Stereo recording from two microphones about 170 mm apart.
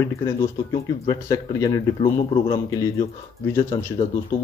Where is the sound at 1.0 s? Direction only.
20° left (ahead or behind).